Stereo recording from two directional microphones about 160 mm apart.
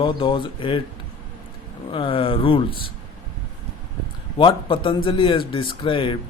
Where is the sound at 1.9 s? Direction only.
35° left (ahead or behind).